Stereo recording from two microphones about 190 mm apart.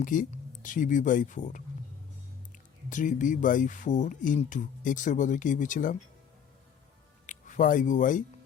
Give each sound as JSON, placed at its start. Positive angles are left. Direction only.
{"t": 0.0, "sound": "speech", "side_deg": 45}
{"t": 2.9, "sound": "speech", "side_deg": 40}
{"t": 7.3, "sound": "speech", "side_deg": 40}